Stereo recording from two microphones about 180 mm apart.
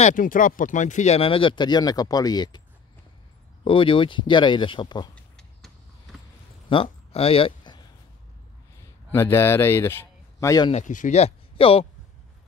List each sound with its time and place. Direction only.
0.0 s speech: 45° left (ahead or behind); by 2.6 s 20° left (ahead or behind)
3.6 s speech: 30° left (ahead or behind)
6.7 s a sound: 30° left (ahead or behind)
9.1 s speech: 15° left (ahead or behind)
10.7 s speech: 45° left (ahead or behind)